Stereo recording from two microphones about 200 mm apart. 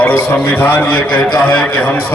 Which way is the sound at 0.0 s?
10° left (ahead or behind).